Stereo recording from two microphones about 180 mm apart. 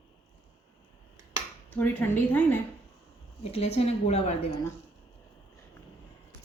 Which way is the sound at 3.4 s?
35° left (ahead or behind).